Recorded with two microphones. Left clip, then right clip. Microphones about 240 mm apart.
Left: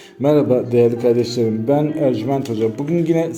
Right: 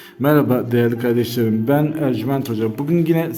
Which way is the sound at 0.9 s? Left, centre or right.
Right.